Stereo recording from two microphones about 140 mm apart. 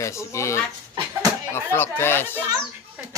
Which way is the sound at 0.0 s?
20° left (ahead or behind).